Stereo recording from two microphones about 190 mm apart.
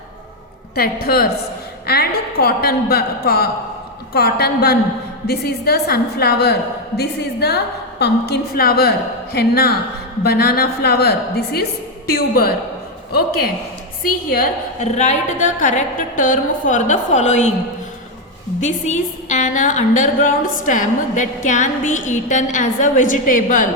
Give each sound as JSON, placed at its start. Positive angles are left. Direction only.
{"t": 0.8, "sound": "a woman's voice", "side_deg": 50}
{"t": 14.8, "sound": "a woman's voice", "side_deg": 40}
{"t": 18.6, "sound": "a woman's voice", "side_deg": 40}